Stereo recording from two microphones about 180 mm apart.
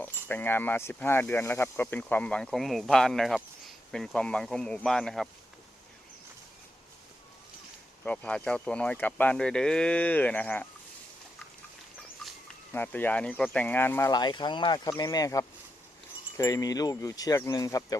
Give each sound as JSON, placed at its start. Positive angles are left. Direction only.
{"t": 0.0, "sound": "speech", "side_deg": 10}
{"t": 8.0, "sound": "speech", "side_deg": 5}
{"t": 12.7, "sound": "speech", "side_deg": 10}